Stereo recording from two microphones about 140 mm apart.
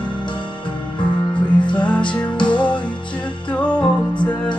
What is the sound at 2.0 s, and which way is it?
Music, 35° left (ahead or behind).